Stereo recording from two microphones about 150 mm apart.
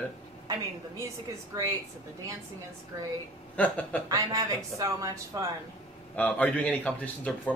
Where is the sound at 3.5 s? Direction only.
10° left (ahead or behind).